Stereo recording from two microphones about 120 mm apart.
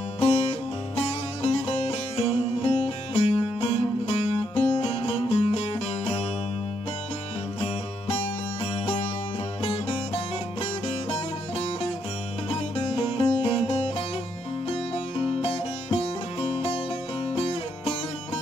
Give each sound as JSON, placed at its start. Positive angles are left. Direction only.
{"t": 0.2, "sound": "music", "side_deg": 55}
{"t": 7.6, "sound": "music", "side_deg": 55}